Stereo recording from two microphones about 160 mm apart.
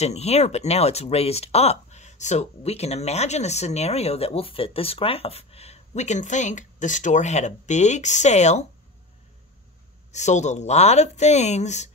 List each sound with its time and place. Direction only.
0.0 s speech: 40° left (ahead or behind)
10.1 s speech: 45° left (ahead or behind)